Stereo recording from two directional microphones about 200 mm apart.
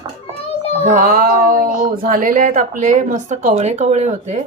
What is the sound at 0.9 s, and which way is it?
Music, 40° right (ahead or behind).